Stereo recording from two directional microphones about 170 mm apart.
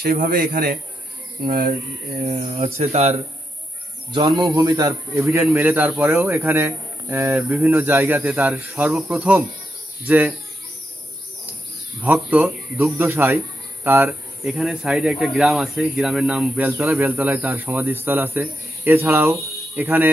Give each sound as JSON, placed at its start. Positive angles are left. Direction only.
{"t": 0.0, "sound": "a man's voice", "side_deg": -60}
{"t": 2.2, "sound": "speech", "side_deg": -40}
{"t": 4.1, "sound": "a man's voice", "side_deg": -25}
{"t": 12.0, "sound": "speech", "side_deg": -10}